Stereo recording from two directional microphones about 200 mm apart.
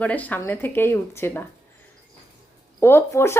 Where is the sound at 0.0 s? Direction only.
5° left (ahead or behind).